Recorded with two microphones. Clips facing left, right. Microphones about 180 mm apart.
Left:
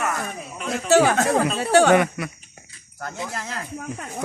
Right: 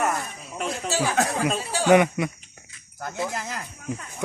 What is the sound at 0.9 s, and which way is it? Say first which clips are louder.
Speech: left 8 dB; 65° left (ahead or behind).